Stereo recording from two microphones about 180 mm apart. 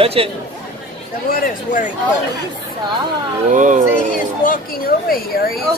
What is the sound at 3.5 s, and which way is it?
Speech, 45° right (ahead or behind).